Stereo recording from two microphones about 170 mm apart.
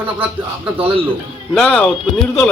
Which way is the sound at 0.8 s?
35° right (ahead or behind).